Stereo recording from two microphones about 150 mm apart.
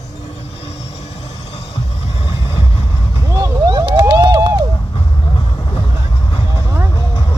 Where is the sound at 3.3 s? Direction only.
25° right (ahead or behind).